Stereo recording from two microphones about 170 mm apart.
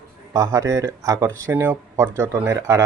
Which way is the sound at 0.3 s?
20° right (ahead or behind).